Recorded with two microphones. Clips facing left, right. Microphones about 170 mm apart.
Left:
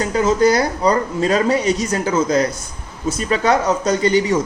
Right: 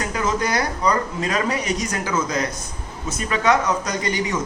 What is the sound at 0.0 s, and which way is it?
A man's voice, 30° left (ahead or behind).